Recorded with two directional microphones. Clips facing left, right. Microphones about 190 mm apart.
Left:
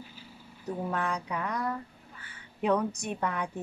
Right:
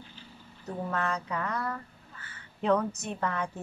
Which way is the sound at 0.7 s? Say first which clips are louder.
Even; 15° left (ahead or behind).